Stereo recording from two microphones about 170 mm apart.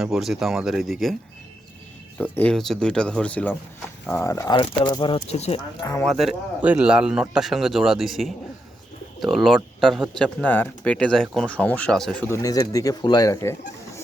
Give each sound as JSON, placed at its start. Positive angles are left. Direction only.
{"t": 0.0, "sound": "speech", "side_deg": 0}
{"t": 2.1, "sound": "speech", "side_deg": 10}
{"t": 5.8, "sound": "speech", "side_deg": 15}
{"t": 6.1, "sound": "speech", "side_deg": 0}
{"t": 12.3, "sound": "speech", "side_deg": 20}